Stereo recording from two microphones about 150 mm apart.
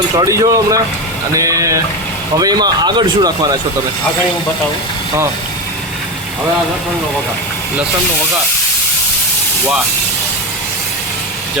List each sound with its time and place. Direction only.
0.2 s speech: 25° right (ahead or behind)